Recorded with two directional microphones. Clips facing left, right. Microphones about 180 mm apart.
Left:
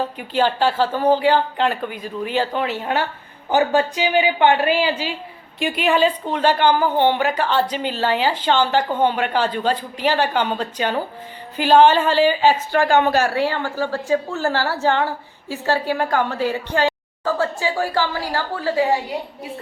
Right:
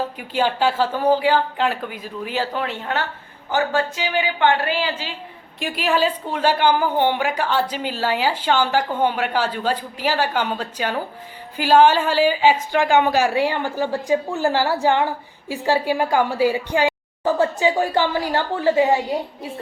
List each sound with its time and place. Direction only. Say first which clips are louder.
0.2 s speech: left 2 dB; 10° right (ahead or behind)
2.8 s a woman's voice: left 3 dB; 15° left (ahead or behind)
5.5 s a woman's voice: left 3 dB; centre (ahead or behind); by 18.9 s 20° right (ahead or behind)